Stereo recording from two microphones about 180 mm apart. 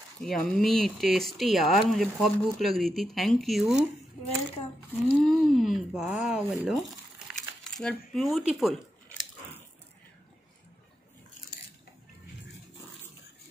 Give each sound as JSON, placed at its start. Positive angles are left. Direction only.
{"t": 0.2, "sound": "speech", "side_deg": 5}
{"t": 5.1, "sound": "speech", "side_deg": 0}